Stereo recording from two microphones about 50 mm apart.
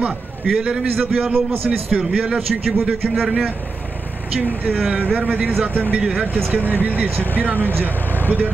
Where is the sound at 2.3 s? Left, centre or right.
Centre.